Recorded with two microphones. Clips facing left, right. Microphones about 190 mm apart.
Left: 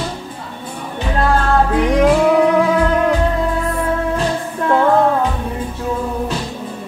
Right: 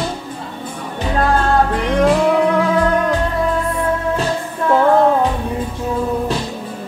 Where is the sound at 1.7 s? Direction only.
5° left (ahead or behind).